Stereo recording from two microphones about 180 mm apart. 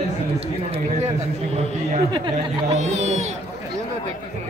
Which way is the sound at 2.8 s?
40° right (ahead or behind).